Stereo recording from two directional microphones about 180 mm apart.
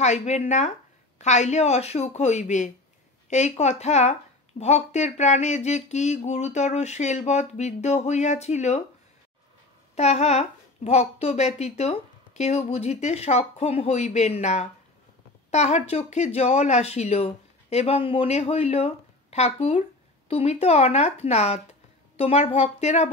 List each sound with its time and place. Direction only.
0.0 s a woman's voice: 40° left (ahead or behind)
9.9 s a woman's voice: 35° left (ahead or behind)